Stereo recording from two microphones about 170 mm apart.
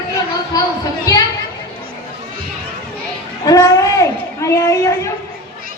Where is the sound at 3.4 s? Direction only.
20° left (ahead or behind).